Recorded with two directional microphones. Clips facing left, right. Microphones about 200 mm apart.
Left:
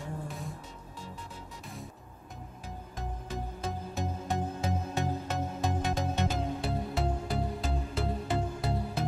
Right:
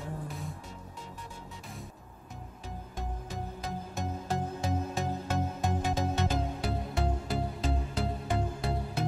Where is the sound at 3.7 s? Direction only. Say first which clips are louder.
Left 1 dB; centre (ahead or behind).